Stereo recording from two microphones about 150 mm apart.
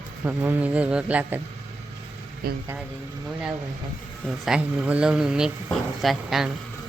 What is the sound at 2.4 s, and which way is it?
Speech, 90° right.